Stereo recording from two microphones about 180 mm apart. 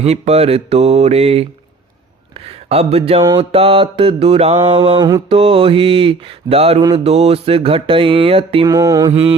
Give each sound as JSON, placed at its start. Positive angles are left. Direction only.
{"t": 0.0, "sound": "mantra", "side_deg": -35}
{"t": 2.6, "sound": "mantra", "side_deg": -35}
{"t": 3.2, "sound": "mantra", "side_deg": -20}
{"t": 3.5, "sound": "mantra", "side_deg": -30}
{"t": 8.6, "sound": "mantra", "side_deg": -20}